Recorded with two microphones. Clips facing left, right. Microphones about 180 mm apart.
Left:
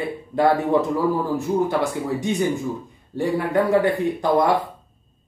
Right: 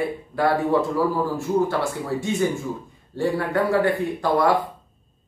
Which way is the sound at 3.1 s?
15° left (ahead or behind).